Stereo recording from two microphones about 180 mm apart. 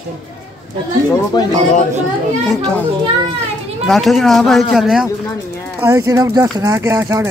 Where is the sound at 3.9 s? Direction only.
Centre (ahead or behind).